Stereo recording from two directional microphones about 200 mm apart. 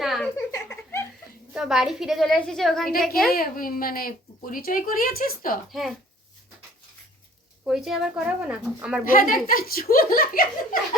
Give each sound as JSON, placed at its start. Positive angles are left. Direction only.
{"t": 0.0, "sound": "a sound", "side_deg": 0}
{"t": 0.3, "sound": "a sound", "side_deg": 15}
{"t": 1.5, "sound": "a woman's voice", "side_deg": 0}
{"t": 3.2, "sound": "speech", "side_deg": 45}
{"t": 7.7, "sound": "a woman's voice", "side_deg": 0}
{"t": 9.0, "sound": "speech", "side_deg": 45}